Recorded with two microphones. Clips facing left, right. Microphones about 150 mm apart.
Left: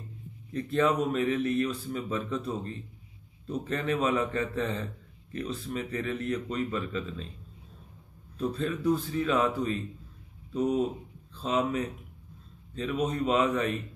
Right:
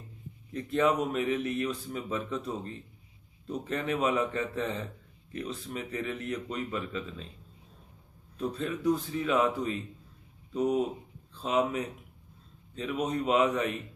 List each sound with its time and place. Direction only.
0.5 s a man's voice: 15° right (ahead or behind)
3.6 s a man's voice: 15° right (ahead or behind)
8.4 s a man's voice: 15° right (ahead or behind)